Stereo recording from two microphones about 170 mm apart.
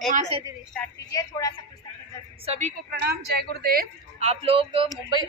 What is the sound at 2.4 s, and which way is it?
Speech, 35° right (ahead or behind).